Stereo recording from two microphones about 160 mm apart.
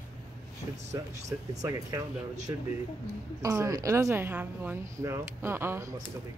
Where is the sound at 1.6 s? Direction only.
20° right (ahead or behind).